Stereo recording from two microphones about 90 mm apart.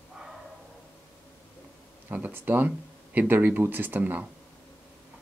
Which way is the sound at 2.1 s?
20° right (ahead or behind).